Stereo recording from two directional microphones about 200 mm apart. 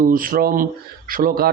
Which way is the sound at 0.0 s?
45° right (ahead or behind).